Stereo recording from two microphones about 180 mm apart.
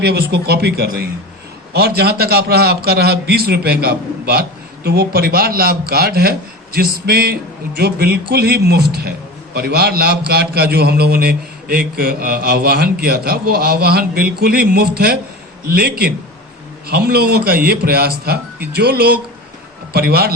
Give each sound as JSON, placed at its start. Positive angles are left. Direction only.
{"t": 0.0, "sound": "a man's voice", "side_deg": -65}